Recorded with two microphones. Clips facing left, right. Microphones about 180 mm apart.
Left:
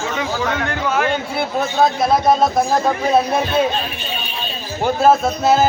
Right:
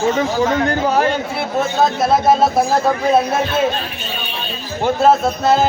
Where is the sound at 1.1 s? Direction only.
Centre (ahead or behind).